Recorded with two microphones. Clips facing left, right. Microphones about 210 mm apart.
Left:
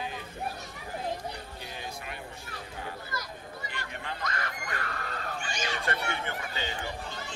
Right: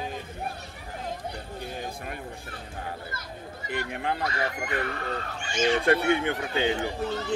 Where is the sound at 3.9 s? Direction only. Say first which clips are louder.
Right 5 dB; 60° right (ahead or behind).